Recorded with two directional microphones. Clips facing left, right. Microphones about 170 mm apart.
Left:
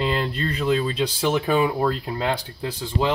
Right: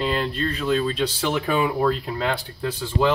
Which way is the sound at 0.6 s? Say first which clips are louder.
Left 1 dB; 10° left (ahead or behind).